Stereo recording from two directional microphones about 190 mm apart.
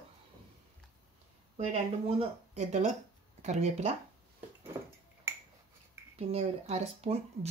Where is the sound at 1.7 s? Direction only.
35° right (ahead or behind).